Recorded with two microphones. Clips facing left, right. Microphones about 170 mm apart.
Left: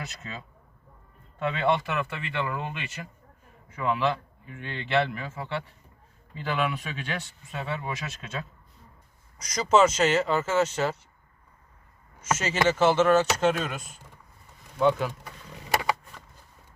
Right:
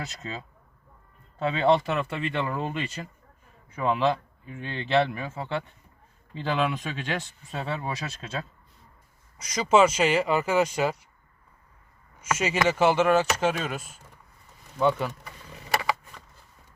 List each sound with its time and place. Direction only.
0.2 s speech: 30° right (ahead or behind)
9.4 s speech: 5° right (ahead or behind)
12.6 s speech: 10° right (ahead or behind)